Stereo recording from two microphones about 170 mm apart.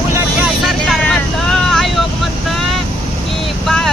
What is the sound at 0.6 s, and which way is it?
Vehicle, centre (ahead or behind).